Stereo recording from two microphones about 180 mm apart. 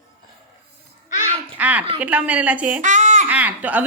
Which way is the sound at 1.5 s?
10° right (ahead or behind).